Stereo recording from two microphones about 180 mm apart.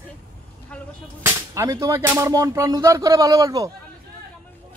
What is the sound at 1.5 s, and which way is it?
Speech, 20° right (ahead or behind).